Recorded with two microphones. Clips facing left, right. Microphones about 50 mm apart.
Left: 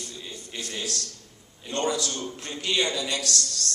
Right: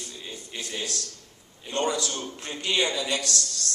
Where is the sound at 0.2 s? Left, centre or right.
Centre.